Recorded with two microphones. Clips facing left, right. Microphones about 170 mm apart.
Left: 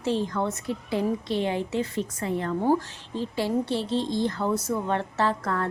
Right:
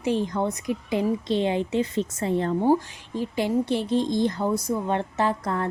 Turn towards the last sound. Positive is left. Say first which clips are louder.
# right 1 dB
turn(degrees=-20)  # may be behind; listen again after turning